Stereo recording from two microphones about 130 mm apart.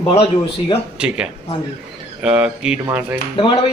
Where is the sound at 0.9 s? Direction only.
10° right (ahead or behind).